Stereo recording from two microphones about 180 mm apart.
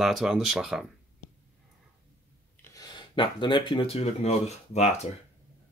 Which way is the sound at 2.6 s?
20° left (ahead or behind).